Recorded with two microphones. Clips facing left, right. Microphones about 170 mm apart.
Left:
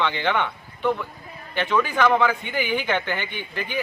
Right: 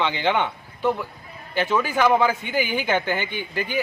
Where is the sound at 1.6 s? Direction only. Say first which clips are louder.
Even; 5° right (ahead or behind).